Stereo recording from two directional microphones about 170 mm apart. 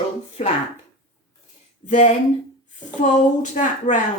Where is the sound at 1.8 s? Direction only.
45° left (ahead or behind).